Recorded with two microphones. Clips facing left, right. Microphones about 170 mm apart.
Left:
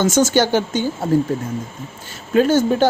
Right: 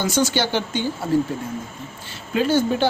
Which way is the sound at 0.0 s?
45° left (ahead or behind).